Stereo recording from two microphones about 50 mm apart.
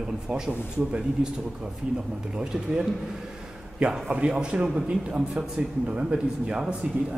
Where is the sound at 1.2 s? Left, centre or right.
Right.